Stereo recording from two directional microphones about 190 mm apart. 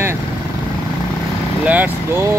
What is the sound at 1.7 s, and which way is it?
Speech, 10° right (ahead or behind).